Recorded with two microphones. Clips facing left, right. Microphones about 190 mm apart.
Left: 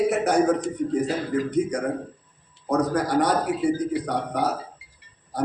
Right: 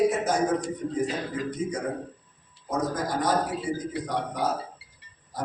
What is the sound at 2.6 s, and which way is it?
A man's voice, 70° left (ahead or behind).